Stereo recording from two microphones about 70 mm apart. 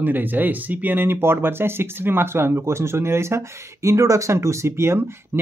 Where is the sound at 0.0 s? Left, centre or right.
Right.